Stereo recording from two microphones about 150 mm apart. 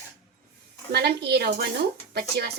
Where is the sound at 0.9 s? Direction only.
90° right.